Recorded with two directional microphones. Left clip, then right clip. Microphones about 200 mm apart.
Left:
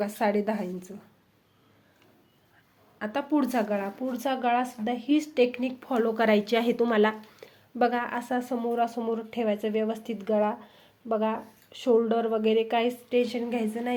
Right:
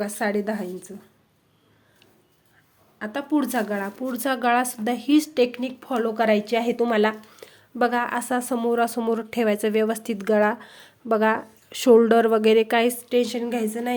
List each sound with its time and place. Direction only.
0.0 s a woman's voice: 10° right (ahead or behind)
3.0 s speech: 5° right (ahead or behind)